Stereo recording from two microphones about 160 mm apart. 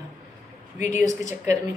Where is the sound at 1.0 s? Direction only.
20° right (ahead or behind).